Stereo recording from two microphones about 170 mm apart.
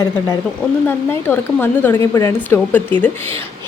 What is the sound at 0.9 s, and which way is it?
A woman's voice, 10° left (ahead or behind).